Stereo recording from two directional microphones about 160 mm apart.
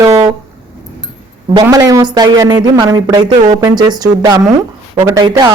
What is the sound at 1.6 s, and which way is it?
Speech, 20° right (ahead or behind).